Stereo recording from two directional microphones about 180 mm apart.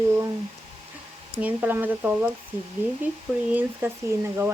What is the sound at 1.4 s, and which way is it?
Speech, 10° right (ahead or behind).